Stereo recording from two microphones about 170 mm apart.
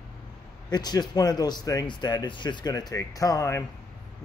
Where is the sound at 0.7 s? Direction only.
25° left (ahead or behind).